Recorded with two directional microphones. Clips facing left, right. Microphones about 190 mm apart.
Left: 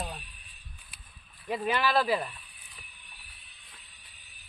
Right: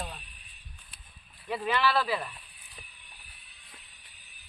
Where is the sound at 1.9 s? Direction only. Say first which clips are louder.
Left 2 dB; 40° left (ahead or behind).